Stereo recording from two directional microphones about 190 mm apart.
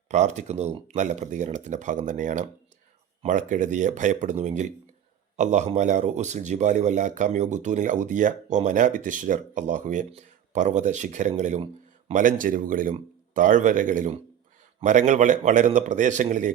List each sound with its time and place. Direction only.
0.1 s speech: 40° right (ahead or behind)